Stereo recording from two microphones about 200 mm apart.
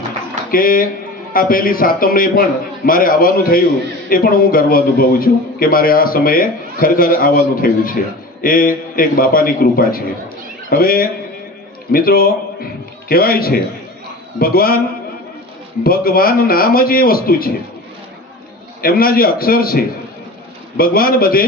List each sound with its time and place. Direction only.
0.5 s a man's voice: 45° left (ahead or behind)
15.8 s a man's voice: 45° left (ahead or behind)
18.8 s a man's voice: 50° left (ahead or behind)